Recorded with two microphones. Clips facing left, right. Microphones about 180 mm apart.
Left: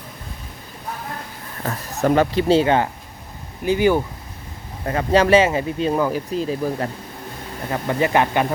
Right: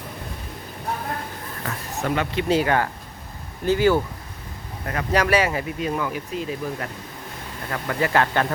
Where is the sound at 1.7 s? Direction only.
40° left (ahead or behind); by 4.0 s 15° left (ahead or behind).